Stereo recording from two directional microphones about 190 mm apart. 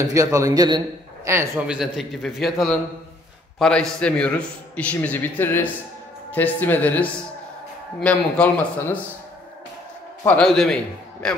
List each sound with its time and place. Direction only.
0.1 s a man's voice: 15° right (ahead or behind)
1.8 s a man's voice: centre (ahead or behind)
10.2 s a man's voice: 5° left (ahead or behind)